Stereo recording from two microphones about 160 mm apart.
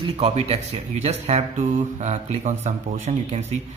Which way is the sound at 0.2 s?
40° right (ahead or behind).